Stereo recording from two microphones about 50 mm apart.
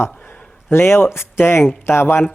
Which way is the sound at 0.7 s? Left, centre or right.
Left.